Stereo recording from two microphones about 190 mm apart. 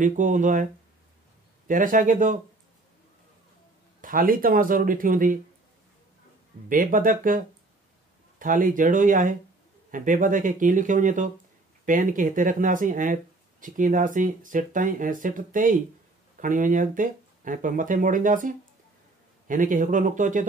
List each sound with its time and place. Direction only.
0.0 s speech: 45° right (ahead or behind)
1.7 s speech: 45° right (ahead or behind)
4.0 s speech: 45° right (ahead or behind)
6.7 s speech: 45° right (ahead or behind)